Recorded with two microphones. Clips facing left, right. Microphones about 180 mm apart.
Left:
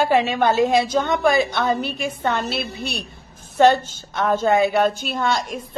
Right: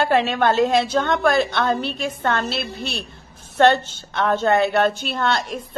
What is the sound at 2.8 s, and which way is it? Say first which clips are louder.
Speech: even; 55° left (ahead or behind).